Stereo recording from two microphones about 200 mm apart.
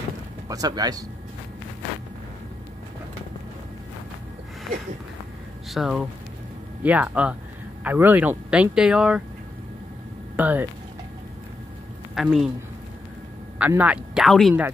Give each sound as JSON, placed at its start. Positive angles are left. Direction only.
{"t": 0.5, "sound": "speech", "side_deg": -20}
{"t": 5.7, "sound": "speech", "side_deg": 0}
{"t": 10.3, "sound": "speech", "side_deg": -10}
{"t": 12.2, "sound": "speech", "side_deg": 0}
{"t": 13.6, "sound": "speech", "side_deg": -10}